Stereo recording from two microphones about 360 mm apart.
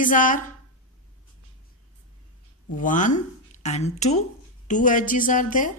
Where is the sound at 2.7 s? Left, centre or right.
Left.